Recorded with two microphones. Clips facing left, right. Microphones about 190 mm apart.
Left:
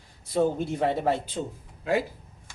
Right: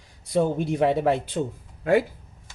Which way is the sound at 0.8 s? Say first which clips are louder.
Right 4 dB; 65° right (ahead or behind).